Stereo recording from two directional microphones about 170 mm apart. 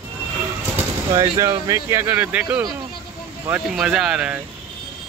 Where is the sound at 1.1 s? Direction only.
25° right (ahead or behind).